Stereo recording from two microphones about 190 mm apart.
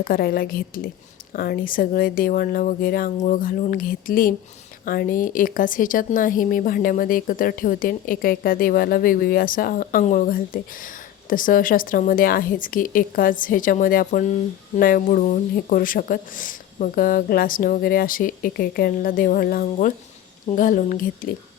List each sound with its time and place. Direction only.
0.0 s speech: 50° left (ahead or behind)